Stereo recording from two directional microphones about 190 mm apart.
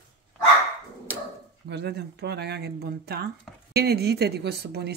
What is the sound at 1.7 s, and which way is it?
Speech, 60° right (ahead or behind).